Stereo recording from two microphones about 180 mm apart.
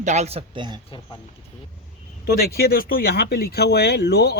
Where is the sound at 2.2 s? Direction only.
60° left (ahead or behind).